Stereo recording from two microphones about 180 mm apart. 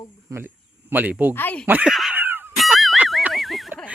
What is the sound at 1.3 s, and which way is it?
Speech, 10° left (ahead or behind).